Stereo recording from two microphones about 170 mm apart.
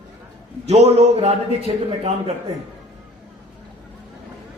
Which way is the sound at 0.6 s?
35° right (ahead or behind).